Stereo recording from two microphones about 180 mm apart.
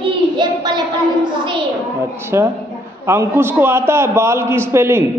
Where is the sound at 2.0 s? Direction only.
15° right (ahead or behind).